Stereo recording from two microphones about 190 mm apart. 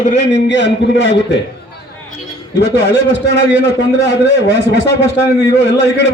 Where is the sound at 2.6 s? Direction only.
60° left (ahead or behind).